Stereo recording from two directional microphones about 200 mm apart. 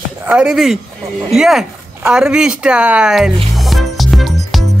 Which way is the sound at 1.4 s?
Centre (ahead or behind).